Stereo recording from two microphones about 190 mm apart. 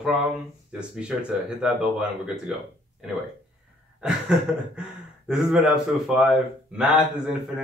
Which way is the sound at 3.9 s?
5° right (ahead or behind).